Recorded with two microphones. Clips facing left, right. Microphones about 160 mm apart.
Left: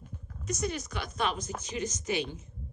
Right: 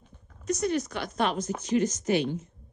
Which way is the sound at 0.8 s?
65° right (ahead or behind).